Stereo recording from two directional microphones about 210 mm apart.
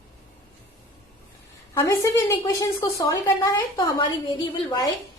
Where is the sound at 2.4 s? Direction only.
20° left (ahead or behind).